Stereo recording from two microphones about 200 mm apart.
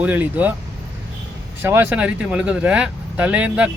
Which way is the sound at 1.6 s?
10° right (ahead or behind).